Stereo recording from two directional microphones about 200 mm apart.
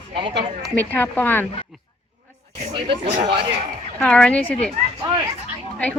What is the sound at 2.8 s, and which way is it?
Speech, 25° right (ahead or behind).